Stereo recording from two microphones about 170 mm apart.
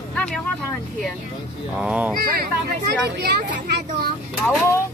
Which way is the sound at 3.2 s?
75° right (ahead or behind).